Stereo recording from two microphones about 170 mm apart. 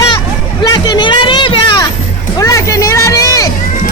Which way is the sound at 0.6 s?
25° left (ahead or behind).